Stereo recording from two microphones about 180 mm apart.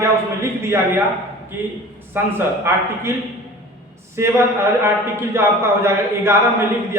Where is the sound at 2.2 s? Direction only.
10° right (ahead or behind).